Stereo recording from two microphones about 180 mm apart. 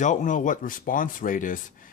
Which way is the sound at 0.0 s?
45° left (ahead or behind).